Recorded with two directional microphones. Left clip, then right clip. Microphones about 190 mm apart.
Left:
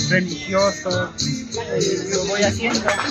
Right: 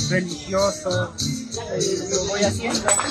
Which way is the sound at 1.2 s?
75° right (ahead or behind).